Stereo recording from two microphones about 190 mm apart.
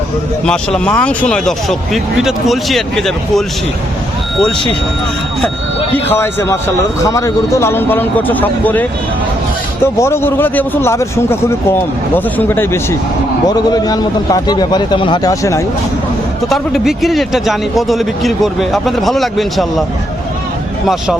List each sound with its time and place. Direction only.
0.4 s a man's voice: 5° left (ahead or behind)
6.1 s a man's voice: 10° left (ahead or behind)
16.5 s a man's voice: centre (ahead or behind)
20.8 s a man's voice: centre (ahead or behind)